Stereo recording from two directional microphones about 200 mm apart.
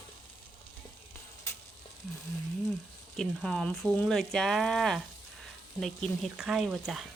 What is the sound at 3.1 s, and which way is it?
Speech, centre (ahead or behind).